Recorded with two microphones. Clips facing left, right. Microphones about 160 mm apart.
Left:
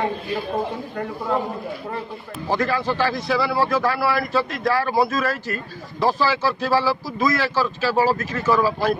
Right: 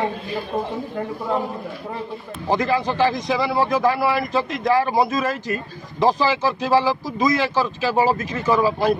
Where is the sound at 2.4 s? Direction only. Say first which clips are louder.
Right 2 dB; 15° right (ahead or behind).